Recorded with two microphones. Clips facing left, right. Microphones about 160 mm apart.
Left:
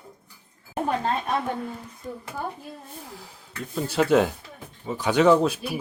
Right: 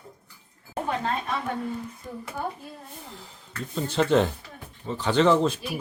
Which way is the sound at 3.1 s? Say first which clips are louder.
Left 1 dB; 10° left (ahead or behind).